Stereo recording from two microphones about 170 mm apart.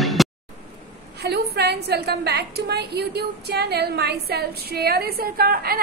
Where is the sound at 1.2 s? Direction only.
75° right (ahead or behind).